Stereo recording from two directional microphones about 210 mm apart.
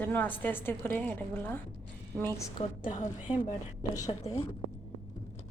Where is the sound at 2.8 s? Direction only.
35° left (ahead or behind).